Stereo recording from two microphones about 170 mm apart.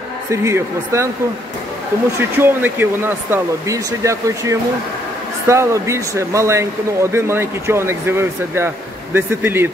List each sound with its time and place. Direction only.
0.3 s speech: 15° right (ahead or behind)
2.1 s speech: 15° right (ahead or behind)